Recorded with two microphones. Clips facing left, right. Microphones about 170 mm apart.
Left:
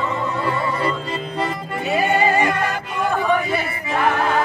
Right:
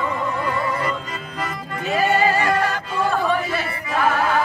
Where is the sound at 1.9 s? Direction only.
20° left (ahead or behind).